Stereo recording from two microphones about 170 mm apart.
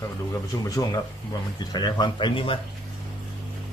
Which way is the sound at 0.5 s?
20° left (ahead or behind).